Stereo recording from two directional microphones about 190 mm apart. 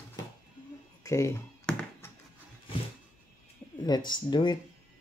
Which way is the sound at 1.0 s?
15° left (ahead or behind).